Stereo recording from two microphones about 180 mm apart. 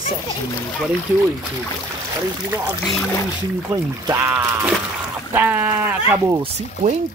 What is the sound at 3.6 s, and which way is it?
Speech, 15° right (ahead or behind).